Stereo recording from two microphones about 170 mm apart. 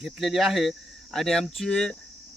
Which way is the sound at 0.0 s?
Centre (ahead or behind).